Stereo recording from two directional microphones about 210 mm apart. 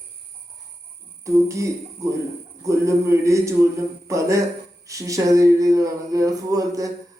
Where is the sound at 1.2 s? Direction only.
15° right (ahead or behind).